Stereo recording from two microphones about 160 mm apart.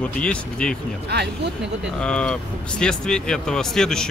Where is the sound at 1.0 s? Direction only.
90° right.